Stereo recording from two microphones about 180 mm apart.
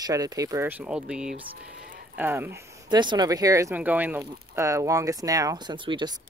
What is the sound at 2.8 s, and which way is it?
Speech, 25° right (ahead or behind).